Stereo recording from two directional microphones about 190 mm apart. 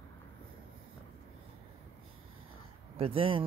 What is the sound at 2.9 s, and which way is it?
Speech, 30° right (ahead or behind).